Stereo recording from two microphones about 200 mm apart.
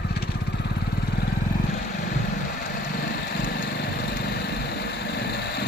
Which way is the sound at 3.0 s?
55° left (ahead or behind).